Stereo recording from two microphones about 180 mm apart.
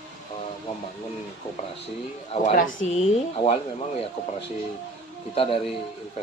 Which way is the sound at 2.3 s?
45° left (ahead or behind).